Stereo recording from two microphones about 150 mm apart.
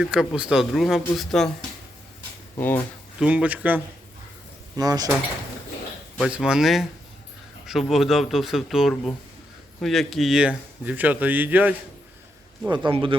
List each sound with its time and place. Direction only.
0.0 s speech: 5° right (ahead or behind)
2.6 s speech: 10° left (ahead or behind)
3.2 s speech: 10° right (ahead or behind)
4.8 s speech: 25° right (ahead or behind)
6.2 s speech: 5° right (ahead or behind)
12.6 s speech: 30° right (ahead or behind)